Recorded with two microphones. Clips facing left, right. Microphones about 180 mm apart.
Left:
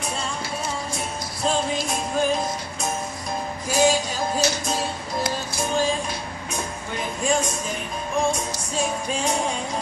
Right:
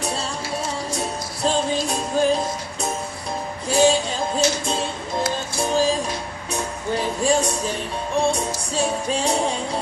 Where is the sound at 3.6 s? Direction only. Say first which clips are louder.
Right 3 dB; 30° right (ahead or behind).